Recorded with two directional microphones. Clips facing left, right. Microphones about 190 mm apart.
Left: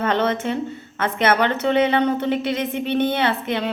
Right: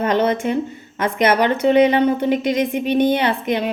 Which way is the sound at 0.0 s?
15° right (ahead or behind).